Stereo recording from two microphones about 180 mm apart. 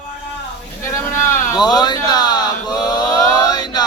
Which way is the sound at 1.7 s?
20° left (ahead or behind).